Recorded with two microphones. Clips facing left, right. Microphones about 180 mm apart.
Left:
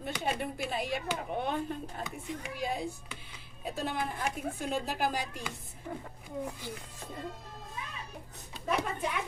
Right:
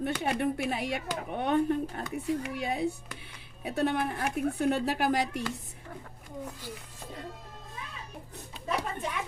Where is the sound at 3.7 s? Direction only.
65° right (ahead or behind).